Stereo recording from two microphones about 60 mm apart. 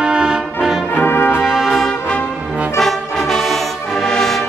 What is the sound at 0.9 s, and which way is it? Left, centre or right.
Brass instrument, left.